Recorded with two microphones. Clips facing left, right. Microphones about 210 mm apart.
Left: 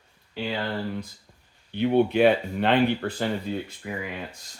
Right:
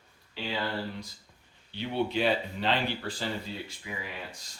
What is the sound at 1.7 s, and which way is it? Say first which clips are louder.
Speech: left 9 dB; 55° left (ahead or behind).